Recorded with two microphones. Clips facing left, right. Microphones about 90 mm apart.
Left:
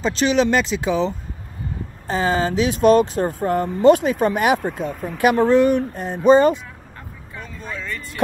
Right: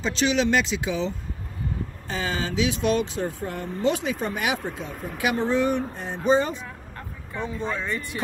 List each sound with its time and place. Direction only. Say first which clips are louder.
0.0 s speech: left 5 dB; 50° left (ahead or behind)
5.4 s speech: left 7 dB; 65° left (ahead or behind)
7.3 s speech: right 4 dB; 20° right (ahead or behind)